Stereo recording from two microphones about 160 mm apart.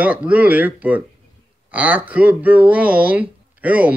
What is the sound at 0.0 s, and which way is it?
Speech, 10° right (ahead or behind).